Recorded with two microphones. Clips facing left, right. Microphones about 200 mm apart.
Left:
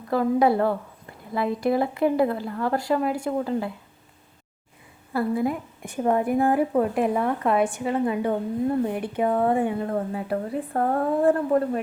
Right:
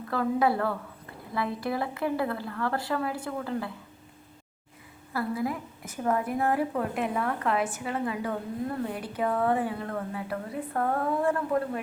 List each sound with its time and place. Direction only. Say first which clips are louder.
0.1 s speech: left 5 dB; 20° left (ahead or behind)
5.1 s speech: left 6 dB; 25° left (ahead or behind)